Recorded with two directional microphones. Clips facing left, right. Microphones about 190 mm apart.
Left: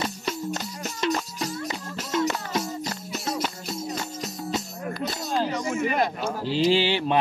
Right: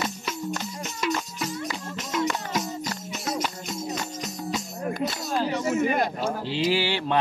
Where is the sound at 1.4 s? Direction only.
30° left (ahead or behind).